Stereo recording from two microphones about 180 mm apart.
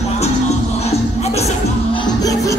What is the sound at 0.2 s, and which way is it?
Music, 35° left (ahead or behind).